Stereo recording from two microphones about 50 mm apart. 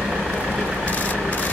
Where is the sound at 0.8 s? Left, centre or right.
Left.